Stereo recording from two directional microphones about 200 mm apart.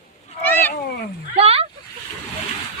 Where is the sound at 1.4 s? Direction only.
30° right (ahead or behind).